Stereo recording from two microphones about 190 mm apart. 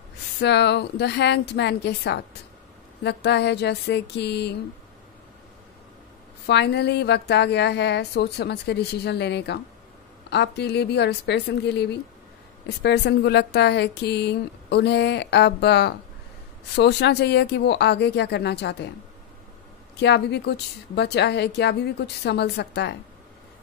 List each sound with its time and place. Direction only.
0.4 s speech: 65° left (ahead or behind)
6.4 s speech: 65° left (ahead or behind)
20.0 s speech: 65° left (ahead or behind)